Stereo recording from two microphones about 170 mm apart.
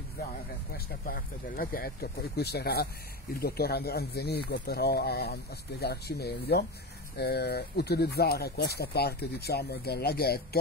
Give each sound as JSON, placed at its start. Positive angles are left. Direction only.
{"t": 0.7, "sound": "speech", "side_deg": 60}